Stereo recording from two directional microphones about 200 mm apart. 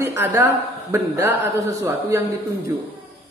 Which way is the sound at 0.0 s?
15° right (ahead or behind).